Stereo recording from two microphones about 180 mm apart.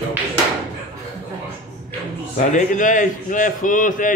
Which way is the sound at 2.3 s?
45° left (ahead or behind).